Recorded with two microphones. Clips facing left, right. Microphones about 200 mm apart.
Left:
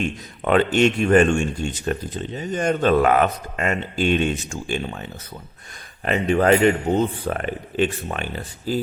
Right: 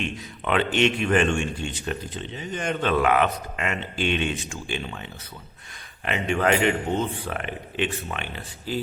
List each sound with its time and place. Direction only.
0.0 s a man's voice: 45° left (ahead or behind)
6.1 s a man's voice: 40° left (ahead or behind)